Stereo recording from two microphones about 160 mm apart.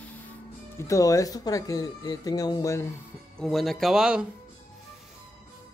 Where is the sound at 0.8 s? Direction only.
20° left (ahead or behind).